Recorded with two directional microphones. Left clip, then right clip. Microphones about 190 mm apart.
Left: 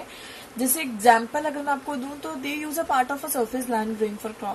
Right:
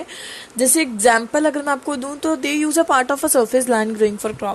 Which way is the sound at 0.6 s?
55° right (ahead or behind).